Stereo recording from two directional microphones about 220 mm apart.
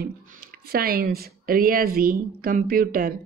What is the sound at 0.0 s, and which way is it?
Speech, 45° right (ahead or behind).